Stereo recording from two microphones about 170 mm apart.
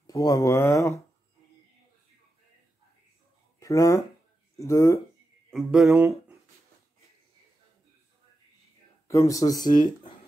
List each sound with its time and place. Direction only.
0.0 s speech: 20° left (ahead or behind)
3.5 s speech: 20° left (ahead or behind)
5.5 s speech: centre (ahead or behind)
5.9 s speech: 15° right (ahead or behind)
9.0 s speech: 15° left (ahead or behind)